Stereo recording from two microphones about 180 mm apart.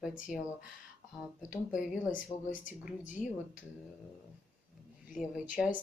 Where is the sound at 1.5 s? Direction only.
5° right (ahead or behind).